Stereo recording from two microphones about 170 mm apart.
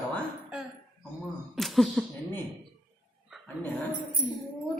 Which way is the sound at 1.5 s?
Centre (ahead or behind).